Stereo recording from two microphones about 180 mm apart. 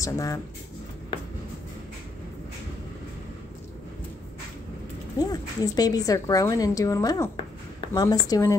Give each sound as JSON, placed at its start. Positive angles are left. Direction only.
{"t": 0.0, "sound": "speech", "side_deg": 20}
{"t": 5.2, "sound": "a woman's voice", "side_deg": 20}